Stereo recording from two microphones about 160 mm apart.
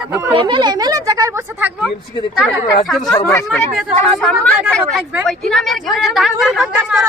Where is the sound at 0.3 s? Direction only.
30° right (ahead or behind).